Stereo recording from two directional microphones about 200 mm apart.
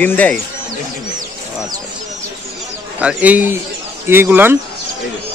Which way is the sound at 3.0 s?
5° right (ahead or behind).